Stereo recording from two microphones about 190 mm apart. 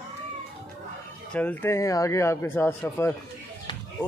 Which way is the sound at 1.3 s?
10° left (ahead or behind).